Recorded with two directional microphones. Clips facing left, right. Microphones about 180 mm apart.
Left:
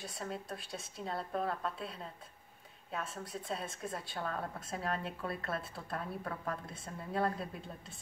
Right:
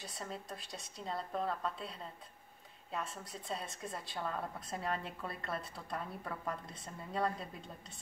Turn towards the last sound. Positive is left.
turn(degrees=5)  # may be behind; listen again after turning